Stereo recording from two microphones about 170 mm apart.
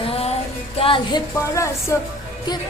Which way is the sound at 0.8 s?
30° left (ahead or behind).